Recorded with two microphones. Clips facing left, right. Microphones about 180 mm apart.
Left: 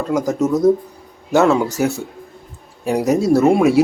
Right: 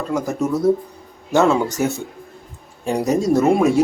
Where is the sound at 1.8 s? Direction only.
5° left (ahead or behind).